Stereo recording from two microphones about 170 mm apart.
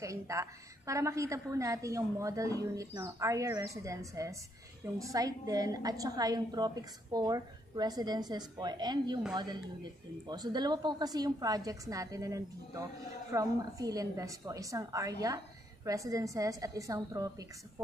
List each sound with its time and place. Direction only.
0.0 s a woman's voice: 20° right (ahead or behind)